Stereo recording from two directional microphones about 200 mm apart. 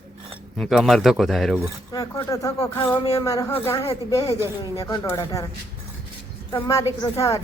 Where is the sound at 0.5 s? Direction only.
Centre (ahead or behind).